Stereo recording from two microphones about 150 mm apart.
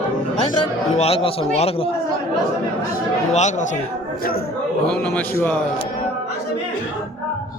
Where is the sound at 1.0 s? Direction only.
40° left (ahead or behind).